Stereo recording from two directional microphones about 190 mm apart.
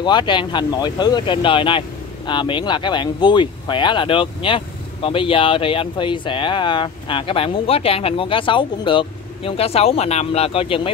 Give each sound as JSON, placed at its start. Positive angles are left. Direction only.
{"t": 0.0, "sound": "speech", "side_deg": 25}